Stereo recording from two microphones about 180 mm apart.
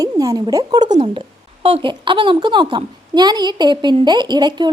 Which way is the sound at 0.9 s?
30° right (ahead or behind).